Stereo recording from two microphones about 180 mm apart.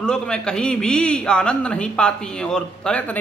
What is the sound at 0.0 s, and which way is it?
A man's voice, 5° left (ahead or behind).